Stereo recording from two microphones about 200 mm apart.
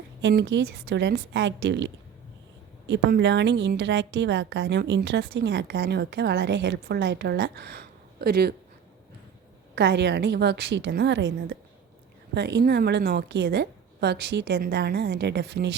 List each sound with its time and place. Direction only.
0.2 s a woman's voice: 65° right (ahead or behind)
9.7 s a woman's voice: 60° right (ahead or behind)